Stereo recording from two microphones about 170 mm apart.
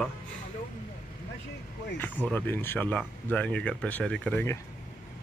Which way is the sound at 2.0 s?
10° left (ahead or behind).